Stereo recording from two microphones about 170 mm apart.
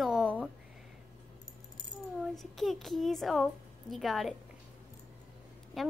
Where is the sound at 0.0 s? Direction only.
5° right (ahead or behind).